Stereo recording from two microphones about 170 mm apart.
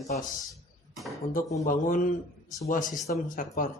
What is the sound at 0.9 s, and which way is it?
Speech, centre (ahead or behind).